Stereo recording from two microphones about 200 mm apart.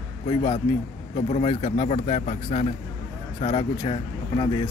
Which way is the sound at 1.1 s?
30° left (ahead or behind).